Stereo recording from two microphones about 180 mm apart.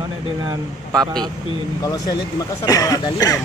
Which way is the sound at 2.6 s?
20° left (ahead or behind).